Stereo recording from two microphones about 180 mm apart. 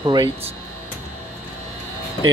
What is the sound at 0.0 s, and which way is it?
Speech, 25° right (ahead or behind).